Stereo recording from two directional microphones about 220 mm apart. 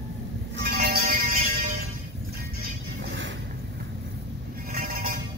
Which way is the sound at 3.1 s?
60° right (ahead or behind).